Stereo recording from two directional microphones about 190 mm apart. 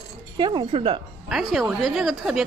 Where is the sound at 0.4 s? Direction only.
20° right (ahead or behind).